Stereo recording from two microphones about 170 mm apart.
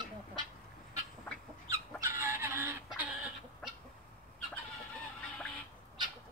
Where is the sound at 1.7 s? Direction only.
15° right (ahead or behind).